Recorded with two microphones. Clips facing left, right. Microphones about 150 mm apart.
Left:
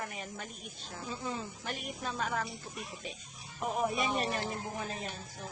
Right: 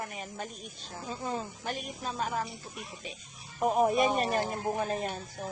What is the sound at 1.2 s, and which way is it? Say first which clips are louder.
Speech: right 6 dB; 45° right (ahead or behind).